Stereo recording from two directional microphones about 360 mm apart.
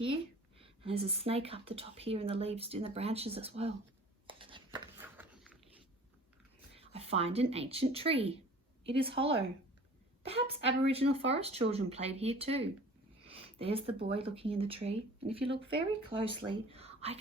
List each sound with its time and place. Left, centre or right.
0.6 s speech: centre
4.3 s a sound: centre
6.7 s speech: centre